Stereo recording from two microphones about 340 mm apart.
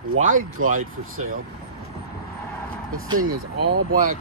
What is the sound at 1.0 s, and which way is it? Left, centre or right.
Speech, right.